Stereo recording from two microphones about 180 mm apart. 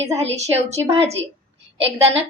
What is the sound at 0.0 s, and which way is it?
A woman's voice, 35° right (ahead or behind).